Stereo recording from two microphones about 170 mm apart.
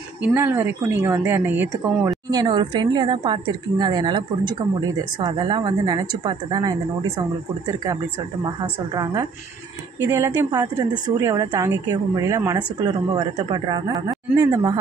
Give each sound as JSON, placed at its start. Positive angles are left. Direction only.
{"t": 0.2, "sound": "speech", "side_deg": -10}
{"t": 2.3, "sound": "a woman's voice", "side_deg": -25}